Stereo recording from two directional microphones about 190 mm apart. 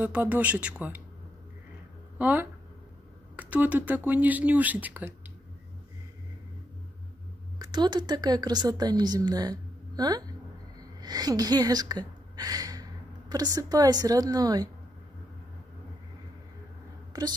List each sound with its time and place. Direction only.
0.0 s speech: 10° right (ahead or behind)
2.1 s speech: 10° right (ahead or behind)
7.5 s a woman's voice: 20° right (ahead or behind)